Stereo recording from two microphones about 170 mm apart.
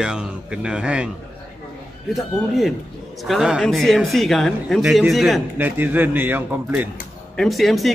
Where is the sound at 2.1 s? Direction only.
Centre (ahead or behind).